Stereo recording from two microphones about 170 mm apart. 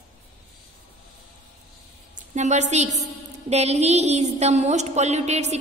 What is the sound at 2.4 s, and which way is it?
Speech, 45° right (ahead or behind).